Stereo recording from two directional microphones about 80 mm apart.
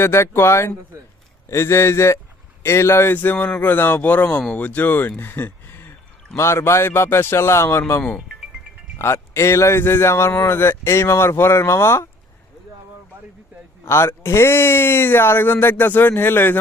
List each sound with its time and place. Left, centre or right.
0.0 s speech: left
13.8 s speech: left